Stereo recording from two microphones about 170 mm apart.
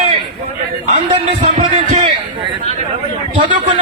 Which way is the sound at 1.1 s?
30° right (ahead or behind).